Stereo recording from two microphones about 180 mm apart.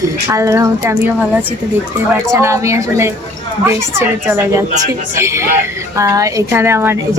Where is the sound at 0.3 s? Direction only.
15° right (ahead or behind).